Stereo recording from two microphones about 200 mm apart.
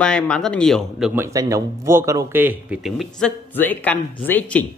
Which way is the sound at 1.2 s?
15° right (ahead or behind).